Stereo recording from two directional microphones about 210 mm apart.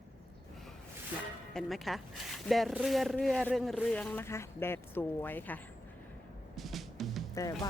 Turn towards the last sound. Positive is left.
turn(degrees=15)  # may be behind; listen again after turning